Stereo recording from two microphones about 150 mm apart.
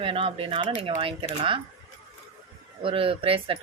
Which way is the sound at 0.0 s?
35° right (ahead or behind).